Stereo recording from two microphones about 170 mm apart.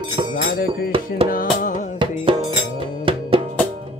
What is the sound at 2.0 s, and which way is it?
Music, 30° right (ahead or behind).